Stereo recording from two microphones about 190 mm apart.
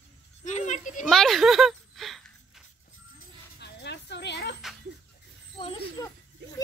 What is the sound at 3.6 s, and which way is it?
Bow-wow, 60° left (ahead or behind).